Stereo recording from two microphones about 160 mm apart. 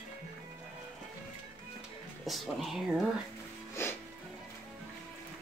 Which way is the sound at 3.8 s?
15° left (ahead or behind).